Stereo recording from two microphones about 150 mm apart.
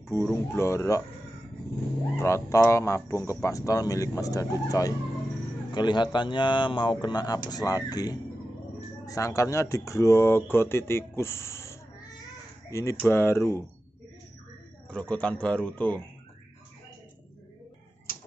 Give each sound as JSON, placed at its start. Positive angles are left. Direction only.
{"t": 0.1, "sound": "a man's voice", "side_deg": 15}
{"t": 2.1, "sound": "a man's voice", "side_deg": 20}
{"t": 14.9, "sound": "a man's voice", "side_deg": 10}